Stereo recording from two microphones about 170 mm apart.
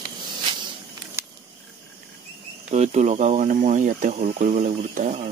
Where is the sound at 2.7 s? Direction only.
40° right (ahead or behind).